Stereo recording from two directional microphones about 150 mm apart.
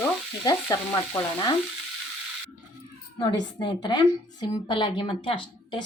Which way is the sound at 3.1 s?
30° left (ahead or behind).